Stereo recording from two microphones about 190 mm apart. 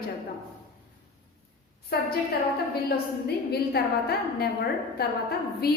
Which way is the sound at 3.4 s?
55° left (ahead or behind).